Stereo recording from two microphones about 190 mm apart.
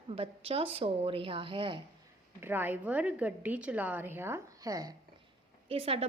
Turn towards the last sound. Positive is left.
turn(degrees=-30)  # may be behind; listen again after turning